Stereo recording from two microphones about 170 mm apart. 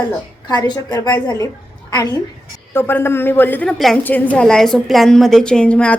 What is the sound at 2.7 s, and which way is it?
A woman's voice, 15° left (ahead or behind).